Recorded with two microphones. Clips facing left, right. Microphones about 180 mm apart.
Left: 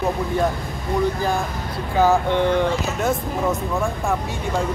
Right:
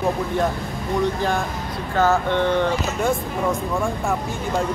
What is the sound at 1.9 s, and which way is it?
Speech, 15° left (ahead or behind).